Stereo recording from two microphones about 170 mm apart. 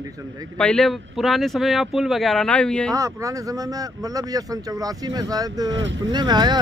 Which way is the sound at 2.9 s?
20° right (ahead or behind).